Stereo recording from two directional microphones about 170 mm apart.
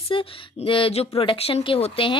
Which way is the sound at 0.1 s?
30° left (ahead or behind).